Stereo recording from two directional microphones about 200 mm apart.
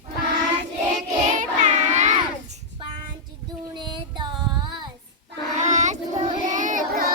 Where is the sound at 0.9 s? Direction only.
35° right (ahead or behind).